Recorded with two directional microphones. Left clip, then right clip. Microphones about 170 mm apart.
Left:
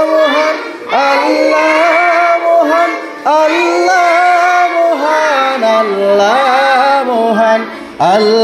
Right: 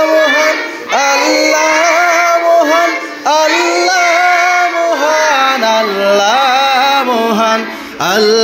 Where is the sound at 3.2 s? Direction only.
35° left (ahead or behind).